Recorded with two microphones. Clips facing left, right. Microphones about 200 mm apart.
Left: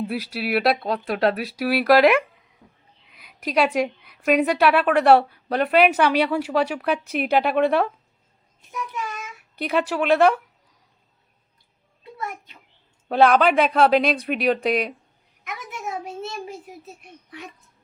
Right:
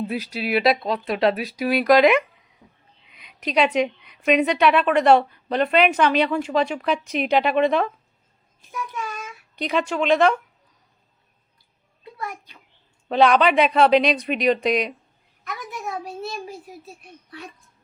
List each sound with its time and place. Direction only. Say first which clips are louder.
0.1 s a woman's voice: right 1 dB; centre (ahead or behind)
9.6 s a woman's voice: even; 5° left (ahead or behind)
12.2 s a child's voice: even; 20° left (ahead or behind)
13.1 s a woman's voice: even; 5° left (ahead or behind)
15.4 s a child's voice: right 1 dB; 20° left (ahead or behind)